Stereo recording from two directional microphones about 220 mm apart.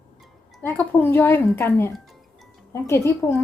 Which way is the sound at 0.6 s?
10° left (ahead or behind).